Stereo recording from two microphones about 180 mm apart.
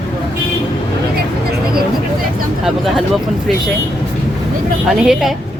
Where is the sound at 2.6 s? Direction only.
Centre (ahead or behind).